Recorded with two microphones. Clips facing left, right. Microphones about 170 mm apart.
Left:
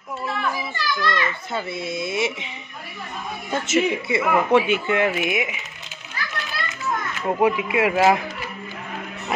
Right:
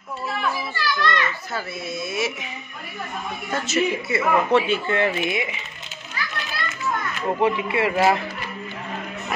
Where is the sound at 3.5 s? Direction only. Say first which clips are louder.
Left 2 dB; 25° left (ahead or behind).